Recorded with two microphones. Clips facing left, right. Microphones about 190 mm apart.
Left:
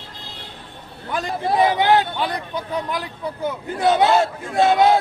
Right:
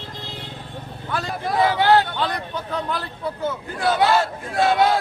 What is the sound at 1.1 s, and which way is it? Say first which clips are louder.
A man's voice: left 3 dB; 15° left (ahead or behind).